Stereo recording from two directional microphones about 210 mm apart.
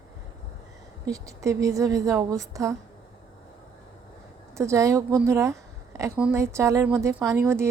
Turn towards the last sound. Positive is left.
turn(degrees=-10)  # may be behind; listen again after turning